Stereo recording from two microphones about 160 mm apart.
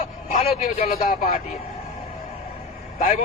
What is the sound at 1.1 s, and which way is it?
Speech, 60° left (ahead or behind).